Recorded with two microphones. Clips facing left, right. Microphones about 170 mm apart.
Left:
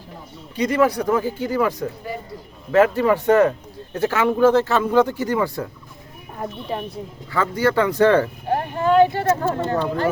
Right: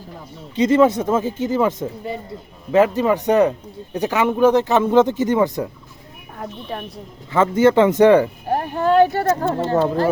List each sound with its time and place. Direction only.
0.5 s speech: 25° right (ahead or behind)
6.4 s a woman's voice: 5° left (ahead or behind)
7.3 s speech: 20° right (ahead or behind)
8.9 s speech: 40° right (ahead or behind)